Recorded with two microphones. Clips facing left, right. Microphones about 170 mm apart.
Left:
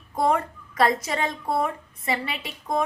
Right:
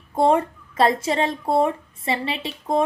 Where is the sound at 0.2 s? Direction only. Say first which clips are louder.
Right 5 dB; 30° right (ahead or behind).